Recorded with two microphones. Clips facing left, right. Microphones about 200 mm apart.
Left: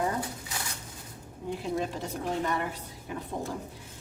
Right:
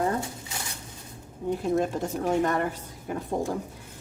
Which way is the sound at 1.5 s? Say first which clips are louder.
Right 6 dB; 50° right (ahead or behind).